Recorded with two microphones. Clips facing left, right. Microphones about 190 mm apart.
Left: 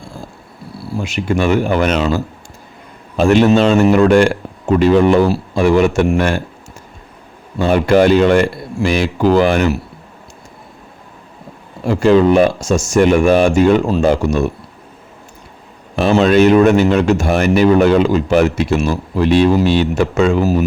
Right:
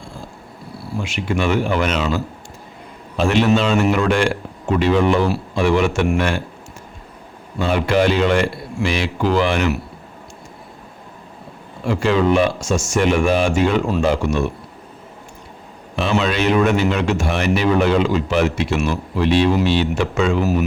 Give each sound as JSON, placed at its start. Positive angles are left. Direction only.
{"t": 1.0, "sound": "speech", "side_deg": 40}
{"t": 7.6, "sound": "speech", "side_deg": 45}
{"t": 11.9, "sound": "speech", "side_deg": 40}
{"t": 16.0, "sound": "speech", "side_deg": 45}